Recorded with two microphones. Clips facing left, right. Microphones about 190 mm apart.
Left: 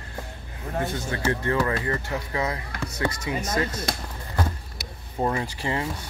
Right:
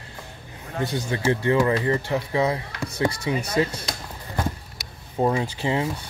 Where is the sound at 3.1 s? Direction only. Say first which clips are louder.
Right 4 dB; 30° right (ahead or behind).